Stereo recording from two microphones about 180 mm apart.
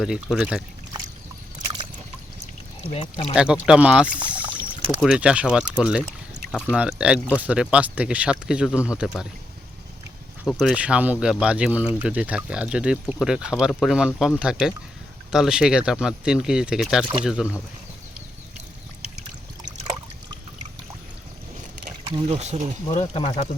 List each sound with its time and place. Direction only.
0.0 s speech: 5° right (ahead or behind)
2.9 s speech: 35° left (ahead or behind)
3.3 s speech: 5° right (ahead or behind)
4.4 s rowboat: 25° right (ahead or behind)
4.9 s speech: 5° right (ahead or behind)
10.4 s speech: centre (ahead or behind)
22.0 s speech: 30° right (ahead or behind)
22.9 s speech: 30° left (ahead or behind)